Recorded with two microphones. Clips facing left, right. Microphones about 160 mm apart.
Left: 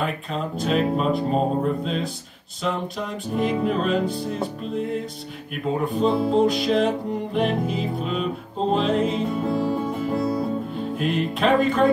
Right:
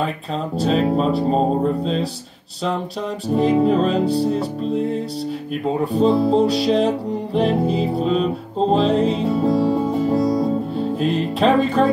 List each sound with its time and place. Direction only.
0.6 s speech: 35° right (ahead or behind)
3.3 s speech: 35° right (ahead or behind)
5.9 s speech: 35° right (ahead or behind)
7.3 s music: 35° right (ahead or behind)